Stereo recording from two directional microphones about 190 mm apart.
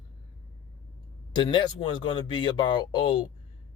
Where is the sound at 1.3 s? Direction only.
25° left (ahead or behind).